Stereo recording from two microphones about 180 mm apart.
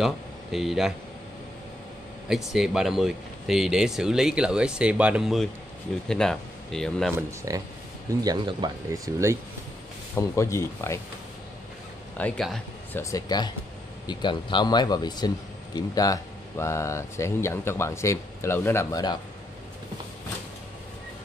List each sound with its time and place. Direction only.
0.0 s speech: centre (ahead or behind)
2.2 s speech: centre (ahead or behind)
7.2 s speech: 15° right (ahead or behind)
10.1 s speech: 15° left (ahead or behind)
12.2 s speech: 5° left (ahead or behind)
13.0 s speech: 20° left (ahead or behind)